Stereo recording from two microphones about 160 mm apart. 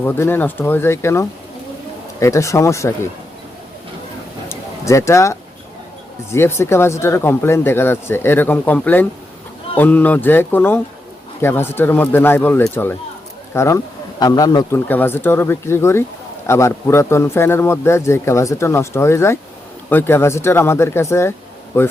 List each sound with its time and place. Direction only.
0.0 s a man's voice: 15° left (ahead or behind)
4.4 s a sound: 20° left (ahead or behind)
6.3 s a man's voice: 15° left (ahead or behind)
14.8 s a man's voice: 10° left (ahead or behind)